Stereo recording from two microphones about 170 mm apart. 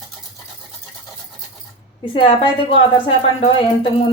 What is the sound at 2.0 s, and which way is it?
A woman's voice, 30° left (ahead or behind).